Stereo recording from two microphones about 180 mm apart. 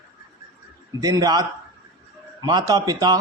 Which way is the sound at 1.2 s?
20° right (ahead or behind).